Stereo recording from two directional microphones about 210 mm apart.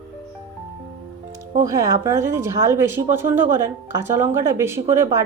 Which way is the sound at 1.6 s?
15° right (ahead or behind).